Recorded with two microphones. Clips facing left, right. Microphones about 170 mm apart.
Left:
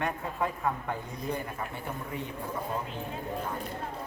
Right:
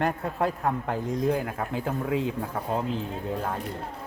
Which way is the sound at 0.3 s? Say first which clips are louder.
Right 4 dB; 70° right (ahead or behind).